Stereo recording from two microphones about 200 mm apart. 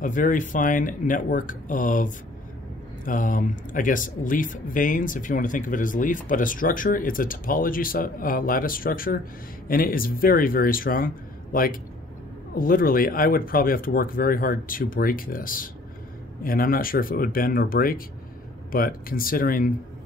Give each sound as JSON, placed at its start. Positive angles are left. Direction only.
{"t": 0.0, "sound": "speech", "side_deg": 40}